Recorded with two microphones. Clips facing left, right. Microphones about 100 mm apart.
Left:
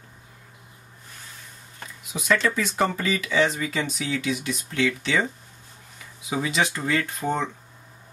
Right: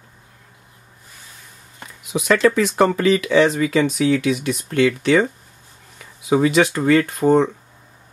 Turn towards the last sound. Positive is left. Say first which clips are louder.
# right 11 dB
turn(degrees=-60)  # may be behind; listen again after turning